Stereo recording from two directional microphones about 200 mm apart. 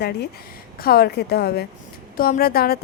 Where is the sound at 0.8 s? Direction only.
50° left (ahead or behind).